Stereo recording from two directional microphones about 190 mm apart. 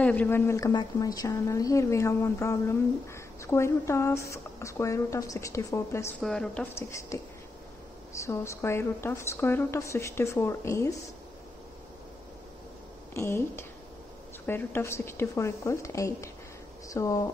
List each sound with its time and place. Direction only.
0.0 s a woman's voice: 10° left (ahead or behind)
6.2 s a woman's voice: 5° left (ahead or behind)
13.1 s a woman's voice: 15° left (ahead or behind)